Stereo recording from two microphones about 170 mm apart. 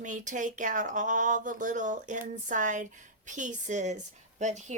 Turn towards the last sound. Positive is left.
turn(degrees=-45)  # may be behind; listen again after turning